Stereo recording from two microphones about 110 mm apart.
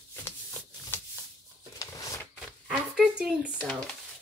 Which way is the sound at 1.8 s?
30° left (ahead or behind).